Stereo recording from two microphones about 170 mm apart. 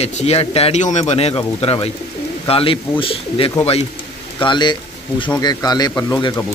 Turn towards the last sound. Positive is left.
turn(degrees=20)  # may be behind; listen again after turning